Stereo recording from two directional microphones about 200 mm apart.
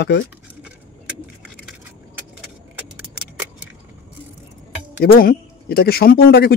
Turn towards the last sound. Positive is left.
turn(degrees=50)  # may be behind; listen again after turning